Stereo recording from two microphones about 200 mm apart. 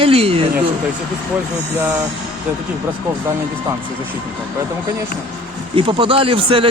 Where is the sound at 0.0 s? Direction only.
30° right (ahead or behind).